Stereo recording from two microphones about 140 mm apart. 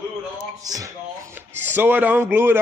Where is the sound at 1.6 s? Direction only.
15° right (ahead or behind).